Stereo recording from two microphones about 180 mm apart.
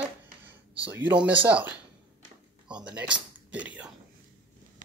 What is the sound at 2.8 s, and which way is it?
Speech, 5° right (ahead or behind).